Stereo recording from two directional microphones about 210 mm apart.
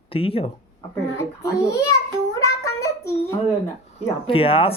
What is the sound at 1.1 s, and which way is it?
A child's voice, 15° left (ahead or behind).